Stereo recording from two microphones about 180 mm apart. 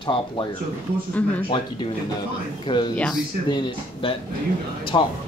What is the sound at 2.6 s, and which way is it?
Speech, 25° left (ahead or behind).